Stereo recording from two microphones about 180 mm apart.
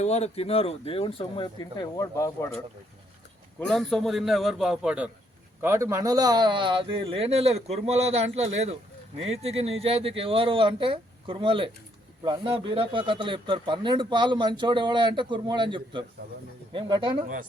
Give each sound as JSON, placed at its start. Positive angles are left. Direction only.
{"t": 0.0, "sound": "speech", "side_deg": 35}
{"t": 3.7, "sound": "a man's voice", "side_deg": 0}